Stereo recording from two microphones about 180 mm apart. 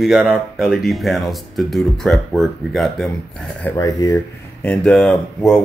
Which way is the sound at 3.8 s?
20° left (ahead or behind).